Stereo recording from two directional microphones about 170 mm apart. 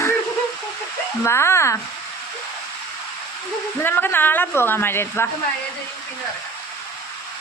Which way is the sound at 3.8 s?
10° left (ahead or behind).